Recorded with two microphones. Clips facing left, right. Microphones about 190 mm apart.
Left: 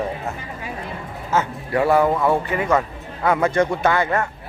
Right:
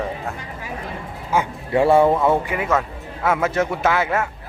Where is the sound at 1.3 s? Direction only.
25° right (ahead or behind).